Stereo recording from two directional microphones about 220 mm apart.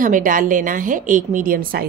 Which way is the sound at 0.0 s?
35° right (ahead or behind).